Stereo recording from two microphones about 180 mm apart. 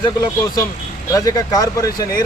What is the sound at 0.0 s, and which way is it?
Speech, 20° left (ahead or behind).